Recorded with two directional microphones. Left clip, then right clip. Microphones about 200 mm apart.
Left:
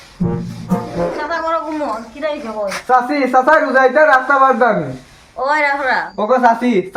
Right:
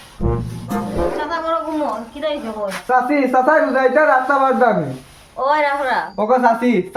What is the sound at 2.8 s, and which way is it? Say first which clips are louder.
A man's voice: left 2 dB; 15° right (ahead or behind).